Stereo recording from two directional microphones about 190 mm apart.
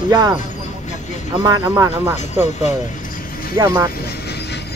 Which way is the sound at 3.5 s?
20° right (ahead or behind).